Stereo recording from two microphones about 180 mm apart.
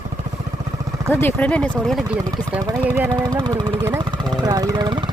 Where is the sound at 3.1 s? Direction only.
25° right (ahead or behind).